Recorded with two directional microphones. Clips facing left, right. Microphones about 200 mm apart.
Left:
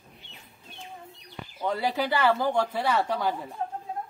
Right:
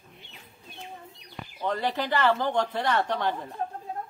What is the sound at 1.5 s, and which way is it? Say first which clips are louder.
Speech: left 1 dB; 10° left (ahead or behind).